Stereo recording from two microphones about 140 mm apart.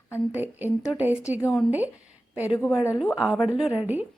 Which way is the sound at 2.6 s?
20° left (ahead or behind).